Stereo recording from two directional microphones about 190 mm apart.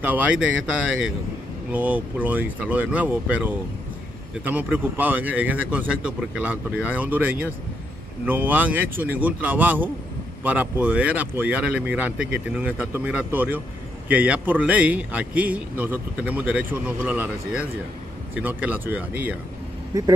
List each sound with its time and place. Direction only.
0.0 s a man's voice: 10° right (ahead or behind)
1.7 s a man's voice: 10° right (ahead or behind)
8.3 s a man's voice: 10° right (ahead or behind)